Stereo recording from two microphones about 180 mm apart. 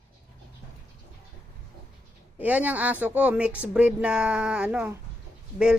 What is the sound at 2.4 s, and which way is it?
Speech, 10° right (ahead or behind).